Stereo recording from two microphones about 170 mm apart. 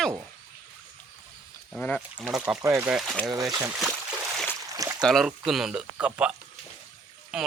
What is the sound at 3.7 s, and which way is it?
Speech, 5° right (ahead or behind).